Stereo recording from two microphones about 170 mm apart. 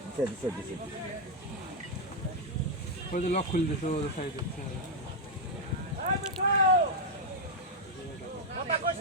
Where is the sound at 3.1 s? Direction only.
45° left (ahead or behind).